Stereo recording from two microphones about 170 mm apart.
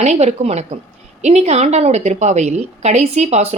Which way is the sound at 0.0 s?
40° right (ahead or behind).